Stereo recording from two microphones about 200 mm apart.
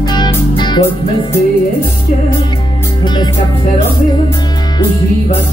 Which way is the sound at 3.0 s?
20° left (ahead or behind).